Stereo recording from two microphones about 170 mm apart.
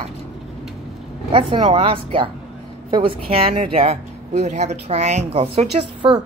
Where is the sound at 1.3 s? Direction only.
30° right (ahead or behind).